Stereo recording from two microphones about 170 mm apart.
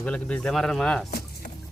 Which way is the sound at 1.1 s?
70° left (ahead or behind).